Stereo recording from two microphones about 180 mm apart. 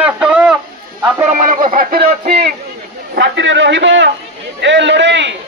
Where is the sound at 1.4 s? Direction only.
45° right (ahead or behind).